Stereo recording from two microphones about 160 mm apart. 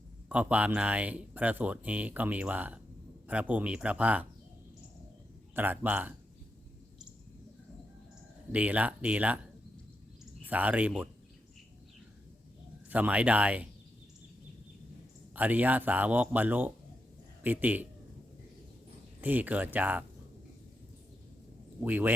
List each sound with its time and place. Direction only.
0.3 s speech: 10° right (ahead or behind)
5.5 s speech: 10° right (ahead or behind)
8.5 s speech: 10° right (ahead or behind)
10.4 s speech: 10° right (ahead or behind)
12.9 s speech: 10° right (ahead or behind)
15.4 s speech: 10° right (ahead or behind)
19.2 s speech: 10° right (ahead or behind)
21.8 s speech: 10° right (ahead or behind)